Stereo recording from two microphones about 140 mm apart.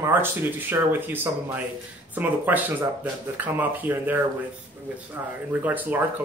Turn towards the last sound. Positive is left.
turn(degrees=-10)  # may be behind; listen again after turning